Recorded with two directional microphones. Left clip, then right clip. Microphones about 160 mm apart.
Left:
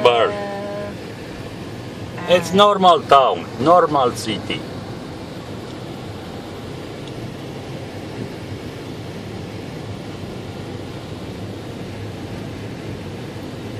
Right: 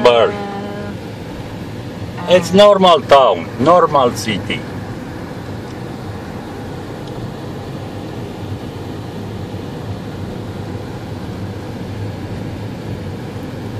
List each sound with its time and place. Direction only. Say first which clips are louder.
0.0 s vehicle: right 4 dB; 10° right (ahead or behind)
2.2 s speech: right 5 dB; 10° right (ahead or behind)